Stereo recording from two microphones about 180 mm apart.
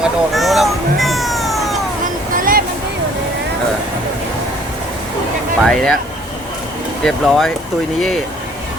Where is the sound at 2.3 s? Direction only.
50° right (ahead or behind).